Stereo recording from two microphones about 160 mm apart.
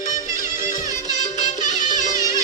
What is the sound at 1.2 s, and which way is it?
Music, 50° left (ahead or behind).